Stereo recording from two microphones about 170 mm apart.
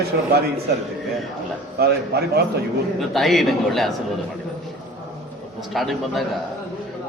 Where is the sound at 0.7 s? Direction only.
75° right (ahead or behind).